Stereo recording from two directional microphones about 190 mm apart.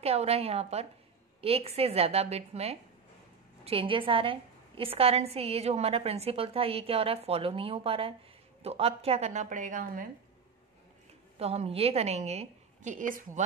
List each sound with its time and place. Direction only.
0.0 s a woman's voice: 35° right (ahead or behind)
11.3 s a woman's voice: 30° right (ahead or behind)